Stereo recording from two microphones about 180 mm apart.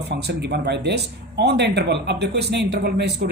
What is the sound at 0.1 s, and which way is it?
Speech, 65° right (ahead or behind).